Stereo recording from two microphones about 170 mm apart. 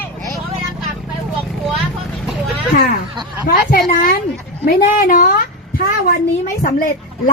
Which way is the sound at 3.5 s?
60° left (ahead or behind).